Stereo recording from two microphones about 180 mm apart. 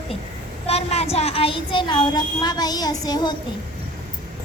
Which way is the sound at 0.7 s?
35° left (ahead or behind).